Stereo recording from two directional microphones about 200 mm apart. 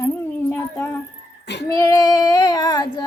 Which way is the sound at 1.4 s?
60° left (ahead or behind).